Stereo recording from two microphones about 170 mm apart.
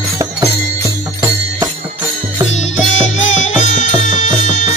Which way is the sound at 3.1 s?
45° left (ahead or behind).